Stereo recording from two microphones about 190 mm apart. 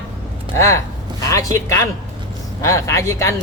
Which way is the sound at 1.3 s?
15° left (ahead or behind).